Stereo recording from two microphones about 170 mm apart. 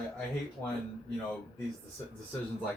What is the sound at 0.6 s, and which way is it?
Speech, 15° left (ahead or behind).